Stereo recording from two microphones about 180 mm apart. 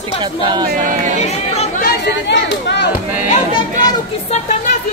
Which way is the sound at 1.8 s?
70° left (ahead or behind).